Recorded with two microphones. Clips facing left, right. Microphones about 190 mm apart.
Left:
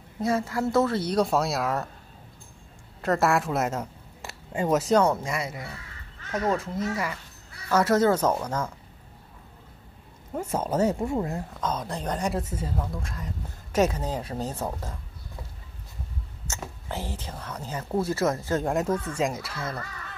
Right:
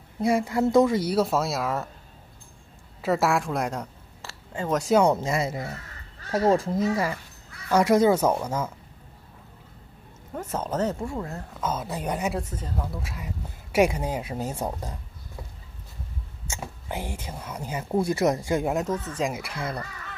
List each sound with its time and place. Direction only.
0.2 s speech: 10° right (ahead or behind)
3.0 s speech: centre (ahead or behind)
4.2 s a sound: 15° left (ahead or behind)
4.7 s speech: centre (ahead or behind)
5.0 s speech: 20° right (ahead or behind)
7.7 s speech: 15° right (ahead or behind)
10.3 s speech: 10° left (ahead or behind)
11.6 s speech: 5° right (ahead or behind)
12.8 s speech: 5° right (ahead or behind)
16.4 s speech: 10° right (ahead or behind)
18.8 s speech: 10° left (ahead or behind)
19.1 s speech: 5° right (ahead or behind)
19.4 s speech: 15° right (ahead or behind)